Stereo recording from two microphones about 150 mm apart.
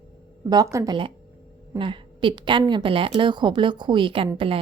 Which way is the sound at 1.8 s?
35° right (ahead or behind).